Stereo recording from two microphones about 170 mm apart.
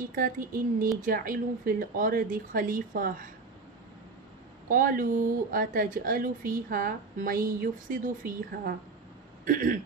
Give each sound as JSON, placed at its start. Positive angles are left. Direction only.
{"t": 0.1, "sound": "speech", "side_deg": -55}
{"t": 4.6, "sound": "speech", "side_deg": -55}
{"t": 9.4, "sound": "a sound", "side_deg": -55}